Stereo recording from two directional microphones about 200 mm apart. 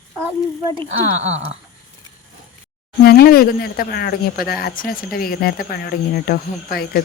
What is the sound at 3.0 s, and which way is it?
Speech, 50° left (ahead or behind).